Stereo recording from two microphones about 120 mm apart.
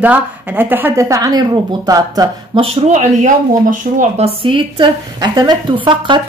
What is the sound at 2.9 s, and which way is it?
Speech, 90° right.